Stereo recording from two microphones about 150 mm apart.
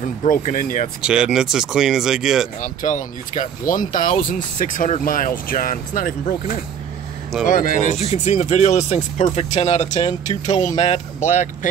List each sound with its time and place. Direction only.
0.0 s speech: 55° left (ahead or behind)
1.0 s speech: 5° right (ahead or behind)
2.6 s speech: 60° left (ahead or behind)
10.4 s speech: 25° left (ahead or behind)
11.1 s speech: 55° left (ahead or behind)